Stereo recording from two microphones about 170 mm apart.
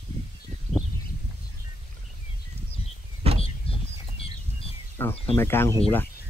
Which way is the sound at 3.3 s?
35° left (ahead or behind).